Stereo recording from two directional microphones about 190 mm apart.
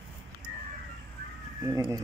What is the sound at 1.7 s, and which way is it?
Speech, 15° right (ahead or behind).